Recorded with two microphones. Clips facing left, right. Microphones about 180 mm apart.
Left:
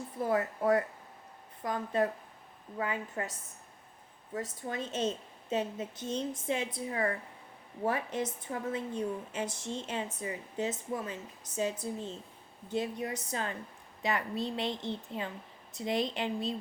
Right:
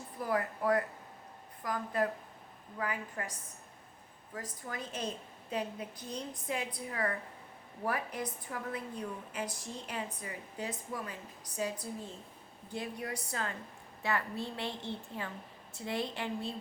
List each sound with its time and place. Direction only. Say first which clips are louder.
0.2 s a woman's voice: left 3 dB; 25° left (ahead or behind)
4.4 s a woman's voice: left 5 dB; 25° left (ahead or behind)